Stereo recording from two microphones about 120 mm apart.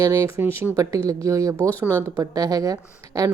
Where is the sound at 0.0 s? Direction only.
25° right (ahead or behind).